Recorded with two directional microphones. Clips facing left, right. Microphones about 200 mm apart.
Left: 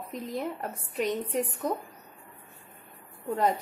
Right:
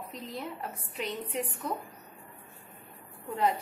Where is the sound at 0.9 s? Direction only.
45° left (ahead or behind).